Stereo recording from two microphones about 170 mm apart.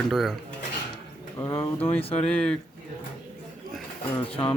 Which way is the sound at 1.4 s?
15° left (ahead or behind).